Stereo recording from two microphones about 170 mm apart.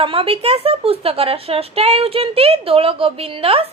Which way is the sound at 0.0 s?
30° right (ahead or behind).